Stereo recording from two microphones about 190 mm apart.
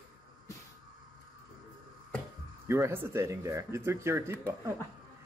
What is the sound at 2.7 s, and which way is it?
Speech, 15° right (ahead or behind).